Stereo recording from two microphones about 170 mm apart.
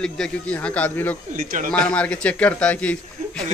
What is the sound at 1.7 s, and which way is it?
A man's voice, 5° left (ahead or behind).